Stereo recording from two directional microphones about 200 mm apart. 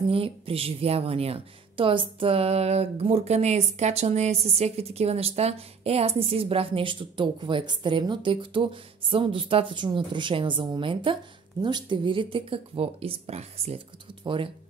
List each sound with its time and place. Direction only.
0.1 s a woman's voice: 30° right (ahead or behind)